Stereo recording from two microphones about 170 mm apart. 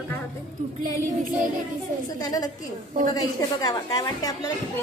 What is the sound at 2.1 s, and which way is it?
A woman's voice, 20° left (ahead or behind).